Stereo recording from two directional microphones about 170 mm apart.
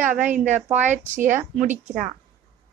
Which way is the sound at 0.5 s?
45° right (ahead or behind).